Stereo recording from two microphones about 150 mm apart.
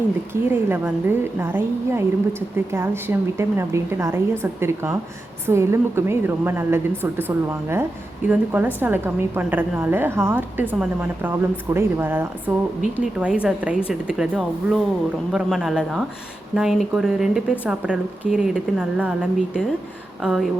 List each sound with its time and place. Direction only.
0.5 s a woman's voice: 15° right (ahead or behind)